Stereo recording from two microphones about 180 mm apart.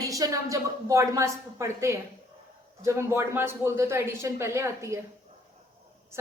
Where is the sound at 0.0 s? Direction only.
20° right (ahead or behind).